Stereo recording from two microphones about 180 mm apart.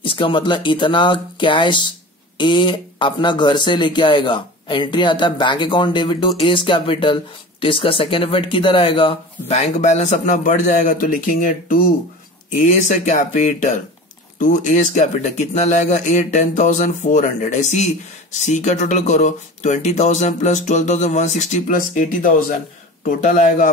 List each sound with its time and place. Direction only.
0.0 s speech: 30° left (ahead or behind); by 23.7 s 45° left (ahead or behind)